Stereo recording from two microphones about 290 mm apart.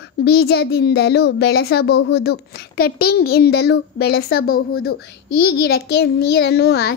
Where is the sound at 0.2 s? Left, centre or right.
Left.